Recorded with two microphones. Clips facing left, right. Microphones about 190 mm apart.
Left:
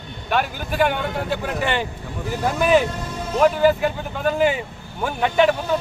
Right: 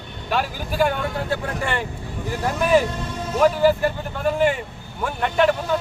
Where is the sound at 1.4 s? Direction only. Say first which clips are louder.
Left 2 dB; 85° left.